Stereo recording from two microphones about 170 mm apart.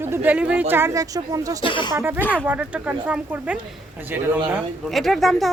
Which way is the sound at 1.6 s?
30° left (ahead or behind).